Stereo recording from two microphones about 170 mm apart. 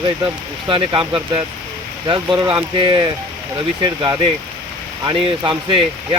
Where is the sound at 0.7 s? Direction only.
30° right (ahead or behind).